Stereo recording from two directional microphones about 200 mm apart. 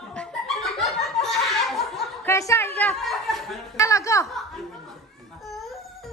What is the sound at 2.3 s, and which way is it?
A woman's voice, 15° left (ahead or behind).